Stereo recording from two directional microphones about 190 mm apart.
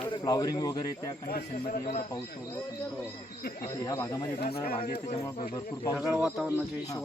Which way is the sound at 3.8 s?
15° left (ahead or behind).